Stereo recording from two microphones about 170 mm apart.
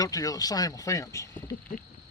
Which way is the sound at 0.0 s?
20° left (ahead or behind).